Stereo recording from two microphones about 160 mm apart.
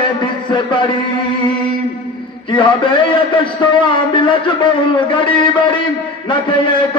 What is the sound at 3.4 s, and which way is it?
A man's voice, 30° left (ahead or behind).